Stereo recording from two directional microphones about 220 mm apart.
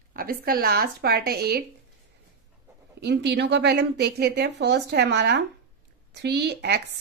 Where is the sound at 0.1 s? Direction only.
40° right (ahead or behind).